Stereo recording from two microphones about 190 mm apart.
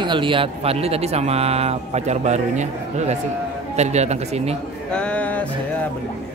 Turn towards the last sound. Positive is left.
turn(degrees=5)  # may be behind; listen again after turning